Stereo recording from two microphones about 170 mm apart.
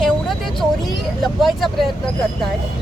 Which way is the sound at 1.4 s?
Centre (ahead or behind).